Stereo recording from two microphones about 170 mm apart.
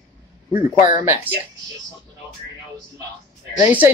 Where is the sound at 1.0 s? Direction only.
10° right (ahead or behind).